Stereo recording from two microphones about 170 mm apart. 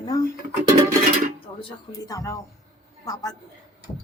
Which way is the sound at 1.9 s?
20° left (ahead or behind).